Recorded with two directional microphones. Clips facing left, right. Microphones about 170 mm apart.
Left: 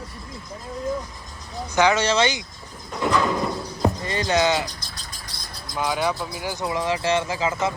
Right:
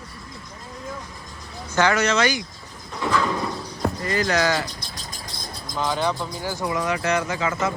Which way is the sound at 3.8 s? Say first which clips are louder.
Even; 25° left (ahead or behind).